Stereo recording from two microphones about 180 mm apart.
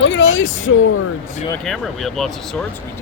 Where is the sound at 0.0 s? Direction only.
85° left.